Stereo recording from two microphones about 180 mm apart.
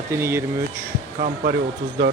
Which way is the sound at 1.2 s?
50° right (ahead or behind).